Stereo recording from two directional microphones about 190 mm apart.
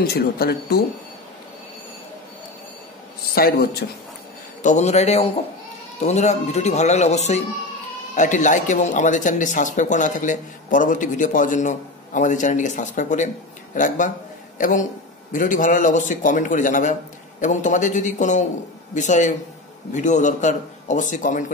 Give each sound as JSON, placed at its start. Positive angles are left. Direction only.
{"t": 0.0, "sound": "speech", "side_deg": 55}
{"t": 3.3, "sound": "a man's voice", "side_deg": 50}
{"t": 4.6, "sound": "a man's voice", "side_deg": 35}